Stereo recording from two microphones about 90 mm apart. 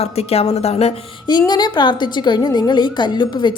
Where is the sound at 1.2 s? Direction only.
50° left (ahead or behind).